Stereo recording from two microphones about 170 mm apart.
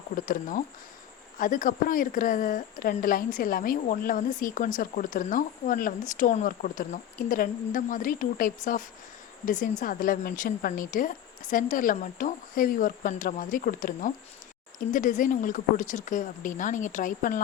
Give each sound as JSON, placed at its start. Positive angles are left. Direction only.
{"t": 0.3, "sound": "a woman's voice", "side_deg": 55}